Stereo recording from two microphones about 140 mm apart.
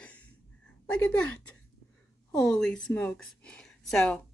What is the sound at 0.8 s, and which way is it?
A woman's voice, 5° left (ahead or behind).